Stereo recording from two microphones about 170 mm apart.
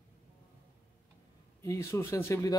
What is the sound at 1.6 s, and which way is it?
Speech, 15° left (ahead or behind).